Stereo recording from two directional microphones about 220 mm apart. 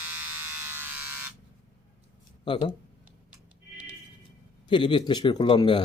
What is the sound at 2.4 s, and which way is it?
Speech, 20° left (ahead or behind).